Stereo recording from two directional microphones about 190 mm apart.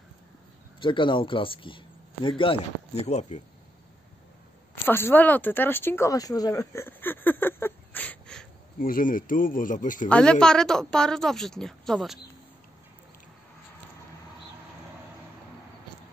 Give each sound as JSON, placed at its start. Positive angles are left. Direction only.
{"t": 0.7, "sound": "speech", "side_deg": 25}
{"t": 4.8, "sound": "speech", "side_deg": 10}
{"t": 8.7, "sound": "speech", "side_deg": 45}
{"t": 10.0, "sound": "a woman's voice", "side_deg": 5}